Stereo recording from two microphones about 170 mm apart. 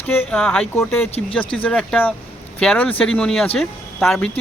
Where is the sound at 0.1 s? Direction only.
10° left (ahead or behind).